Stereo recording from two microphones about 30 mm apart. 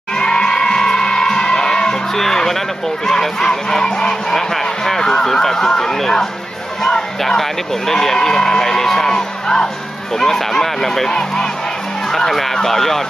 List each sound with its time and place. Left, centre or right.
0.2 s music: left
2.1 s speech: centre
3.1 s honk: centre
4.4 s speech: centre
9.1 s music: left
10.1 s speech: centre
11.1 s honk: left
12.3 s speech: centre